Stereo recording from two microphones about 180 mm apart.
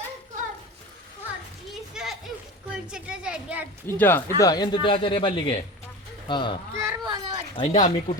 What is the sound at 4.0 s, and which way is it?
Speech, 10° left (ahead or behind).